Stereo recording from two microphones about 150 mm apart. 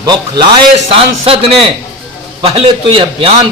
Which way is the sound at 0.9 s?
40° right (ahead or behind).